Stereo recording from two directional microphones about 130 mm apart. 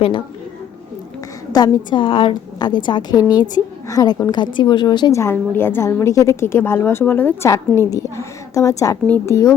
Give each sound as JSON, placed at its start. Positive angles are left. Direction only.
{"t": 1.5, "sound": "a woman's voice", "side_deg": 35}
{"t": 5.2, "sound": "a woman's voice", "side_deg": 15}